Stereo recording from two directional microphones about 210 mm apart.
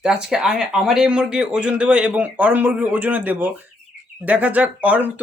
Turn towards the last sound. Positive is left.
turn(degrees=-5)  # may be behind; listen again after turning